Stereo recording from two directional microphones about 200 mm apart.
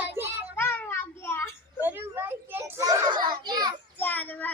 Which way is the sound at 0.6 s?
10° left (ahead or behind).